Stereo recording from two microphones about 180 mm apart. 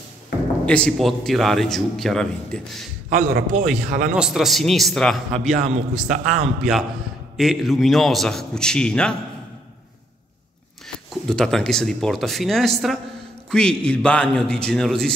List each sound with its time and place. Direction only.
0.7 s a man's voice: 5° left (ahead or behind)
3.1 s a man's voice: 45° right (ahead or behind)
3.6 s a man's voice: centre (ahead or behind)
5.6 s a man's voice: 45° right (ahead or behind)
7.3 s a man's voice: centre (ahead or behind)
11.1 s a man's voice: 5° left (ahead or behind)